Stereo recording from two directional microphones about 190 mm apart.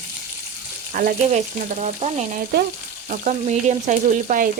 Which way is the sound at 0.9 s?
40° right (ahead or behind).